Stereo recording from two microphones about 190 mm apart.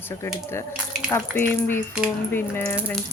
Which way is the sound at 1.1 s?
10° left (ahead or behind).